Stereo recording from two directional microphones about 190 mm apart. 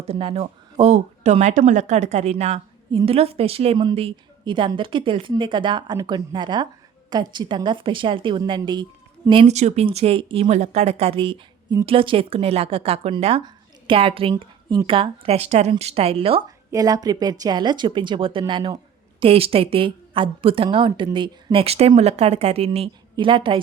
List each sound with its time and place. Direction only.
0.1 s a woman's voice: 30° right (ahead or behind)